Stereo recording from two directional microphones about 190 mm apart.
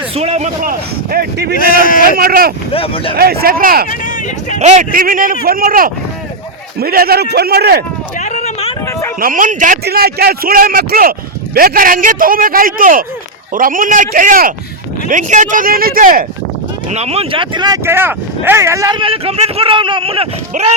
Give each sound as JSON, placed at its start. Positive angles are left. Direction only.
{"t": 0.1, "sound": "a man's voice", "side_deg": -35}
{"t": 1.5, "sound": "speech", "side_deg": 50}
{"t": 2.0, "sound": "a man's voice", "side_deg": -50}
{"t": 2.7, "sound": "speech", "side_deg": 30}
{"t": 3.2, "sound": "a man's voice", "side_deg": -50}
{"t": 3.8, "sound": "speech", "side_deg": 40}
{"t": 4.6, "sound": "a man's voice", "side_deg": -40}
{"t": 8.2, "sound": "a sound", "side_deg": 40}
{"t": 8.9, "sound": "a sound", "side_deg": 15}
{"t": 9.2, "sound": "a man's voice", "side_deg": -45}
{"t": 16.9, "sound": "speech", "side_deg": -35}
{"t": 17.8, "sound": "speech", "side_deg": -10}